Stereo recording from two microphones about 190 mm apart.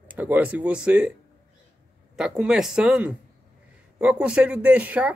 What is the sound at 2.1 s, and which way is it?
Speech, 5° right (ahead or behind).